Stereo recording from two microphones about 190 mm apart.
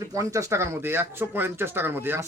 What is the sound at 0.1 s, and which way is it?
Speech, 15° right (ahead or behind).